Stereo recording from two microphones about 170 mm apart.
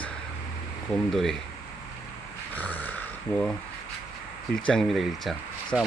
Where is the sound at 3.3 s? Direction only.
15° left (ahead or behind).